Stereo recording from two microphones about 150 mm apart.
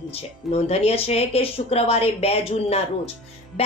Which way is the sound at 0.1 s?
45° left (ahead or behind).